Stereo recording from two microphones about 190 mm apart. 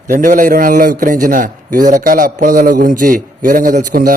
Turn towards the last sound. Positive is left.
turn(degrees=-45)  # may be behind; listen again after turning